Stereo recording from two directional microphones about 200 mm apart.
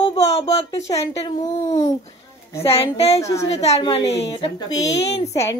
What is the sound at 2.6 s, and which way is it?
Speech, 30° left (ahead or behind).